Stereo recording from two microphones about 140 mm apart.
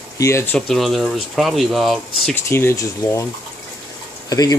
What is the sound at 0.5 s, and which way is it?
Speech, 5° left (ahead or behind).